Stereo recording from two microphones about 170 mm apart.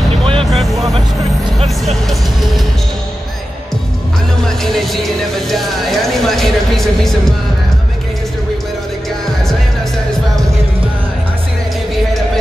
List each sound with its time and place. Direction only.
0.2 s music: 30° right (ahead or behind)
0.5 s music: centre (ahead or behind)
4.4 s music: centre (ahead or behind)